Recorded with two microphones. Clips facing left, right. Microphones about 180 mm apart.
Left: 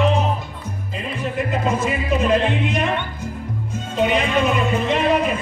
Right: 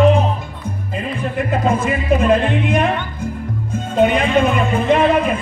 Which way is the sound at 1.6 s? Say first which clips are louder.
Right 4 dB; 55° right (ahead or behind).